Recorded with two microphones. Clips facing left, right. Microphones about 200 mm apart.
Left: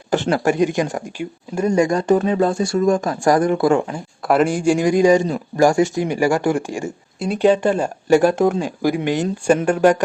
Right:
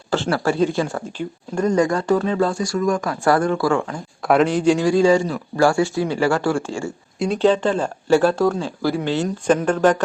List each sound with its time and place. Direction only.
0.1 s speech: 20° left (ahead or behind)
3.9 s a man's voice: 5° left (ahead or behind)